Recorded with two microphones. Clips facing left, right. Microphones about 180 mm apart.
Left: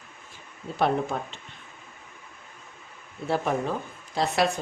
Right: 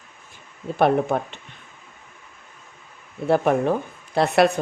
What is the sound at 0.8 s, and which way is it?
Speech, 60° right (ahead or behind).